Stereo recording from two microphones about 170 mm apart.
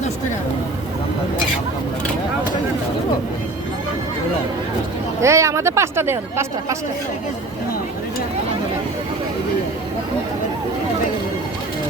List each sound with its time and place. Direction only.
5.2 s speech: 15° right (ahead or behind)